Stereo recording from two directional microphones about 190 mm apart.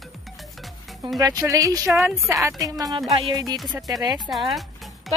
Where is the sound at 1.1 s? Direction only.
20° right (ahead or behind).